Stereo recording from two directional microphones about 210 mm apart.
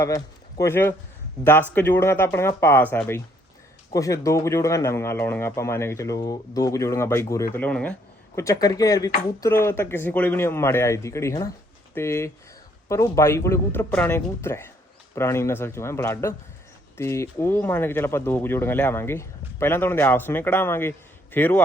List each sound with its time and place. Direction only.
0.6 s speech: 10° left (ahead or behind)
8.4 s speech: 15° left (ahead or behind)